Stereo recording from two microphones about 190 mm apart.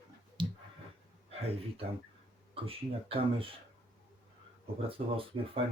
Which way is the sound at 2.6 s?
30° right (ahead or behind).